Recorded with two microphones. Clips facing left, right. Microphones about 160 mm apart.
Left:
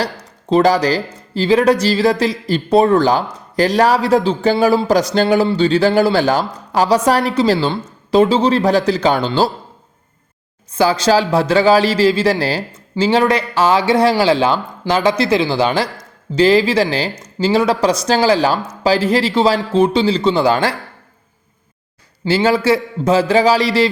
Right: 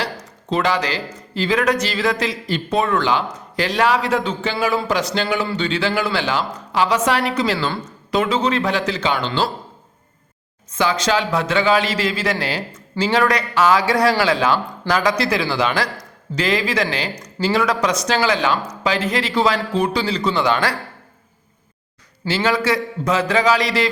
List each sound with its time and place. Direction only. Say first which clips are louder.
0.0 s speech: left 4 dB; 35° left (ahead or behind)
10.7 s speech: left 5 dB; 30° left (ahead or behind)
22.2 s a man's voice: left 5 dB; 25° left (ahead or behind)